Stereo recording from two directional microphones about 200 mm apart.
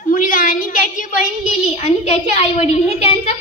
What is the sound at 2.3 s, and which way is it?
A child's voice, 35° left (ahead or behind).